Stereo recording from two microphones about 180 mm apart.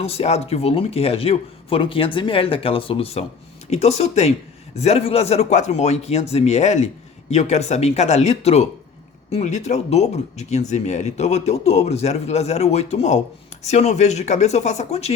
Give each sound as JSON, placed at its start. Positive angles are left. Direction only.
{"t": 0.0, "sound": "speech", "side_deg": 35}